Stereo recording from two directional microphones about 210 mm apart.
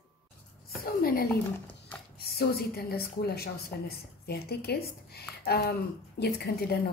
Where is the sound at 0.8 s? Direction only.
45° left (ahead or behind).